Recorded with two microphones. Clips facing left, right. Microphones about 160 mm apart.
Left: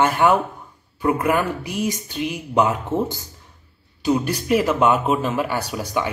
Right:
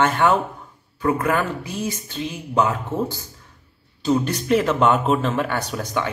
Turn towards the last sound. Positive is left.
turn(degrees=10)  # may be behind; listen again after turning